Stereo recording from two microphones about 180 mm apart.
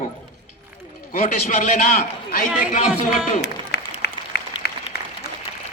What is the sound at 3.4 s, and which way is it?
Applause, 65° left (ahead or behind).